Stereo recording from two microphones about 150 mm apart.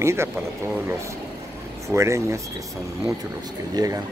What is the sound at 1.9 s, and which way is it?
Speech, 20° right (ahead or behind).